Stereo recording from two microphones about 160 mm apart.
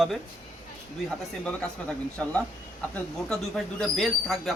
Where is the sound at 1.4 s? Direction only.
5° left (ahead or behind).